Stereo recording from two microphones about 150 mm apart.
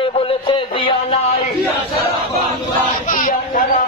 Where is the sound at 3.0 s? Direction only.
65° left (ahead or behind).